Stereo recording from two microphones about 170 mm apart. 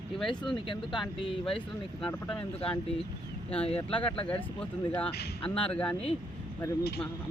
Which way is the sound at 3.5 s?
35° left (ahead or behind).